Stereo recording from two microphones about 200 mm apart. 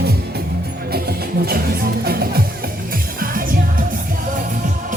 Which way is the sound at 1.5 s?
50° right (ahead or behind).